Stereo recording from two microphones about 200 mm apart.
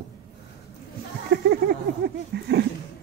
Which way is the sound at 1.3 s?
50° right (ahead or behind).